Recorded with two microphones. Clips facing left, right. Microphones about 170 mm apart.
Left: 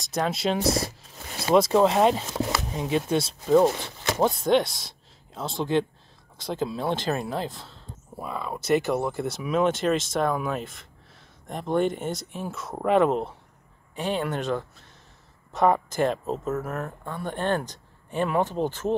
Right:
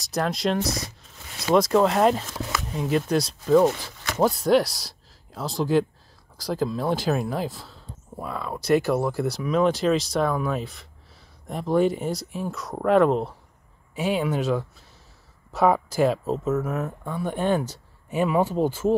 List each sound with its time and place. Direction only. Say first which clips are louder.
0.0 s speech: right 1 dB; centre (ahead or behind)
0.6 s a sound: left 3 dB; 30° left (ahead or behind)
1.5 s speech: even; centre (ahead or behind)